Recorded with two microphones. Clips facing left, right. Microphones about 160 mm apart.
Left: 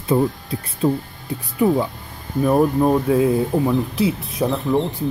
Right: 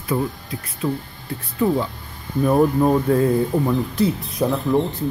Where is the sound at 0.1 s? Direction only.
30° left (ahead or behind).